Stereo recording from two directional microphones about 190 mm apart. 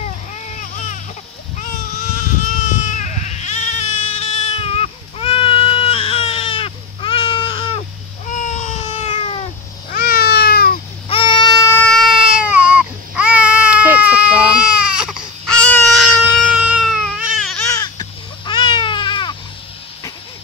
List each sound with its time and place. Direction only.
0.6 s baby cry: 40° left (ahead or behind)
2.8 s goat: 40° left (ahead or behind)
8.3 s a sound: 40° left (ahead or behind)
9.8 s cat: 50° left (ahead or behind)
11.1 s baby cry: 25° left (ahead or behind)
11.9 s baby cry: centre (ahead or behind)
17.7 s baby cry: 20° left (ahead or behind)